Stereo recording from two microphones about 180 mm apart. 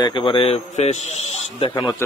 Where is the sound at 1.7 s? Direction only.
20° left (ahead or behind).